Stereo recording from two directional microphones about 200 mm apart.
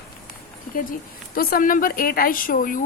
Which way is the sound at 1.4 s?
45° left (ahead or behind).